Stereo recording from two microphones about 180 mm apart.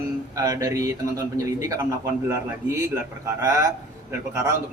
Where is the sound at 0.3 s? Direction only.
20° right (ahead or behind).